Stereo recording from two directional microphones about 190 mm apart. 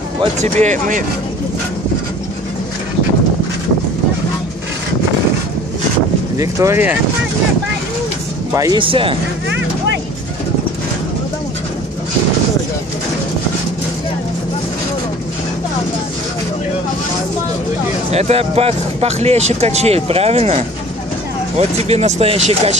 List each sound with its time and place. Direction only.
0.2 s speech: 35° right (ahead or behind)
6.3 s speech: 15° right (ahead or behind)
8.5 s speech: 25° right (ahead or behind)
18.1 s speech: 35° right (ahead or behind)